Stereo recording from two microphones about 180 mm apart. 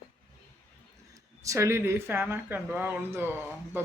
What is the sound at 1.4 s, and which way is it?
Speech, 15° right (ahead or behind).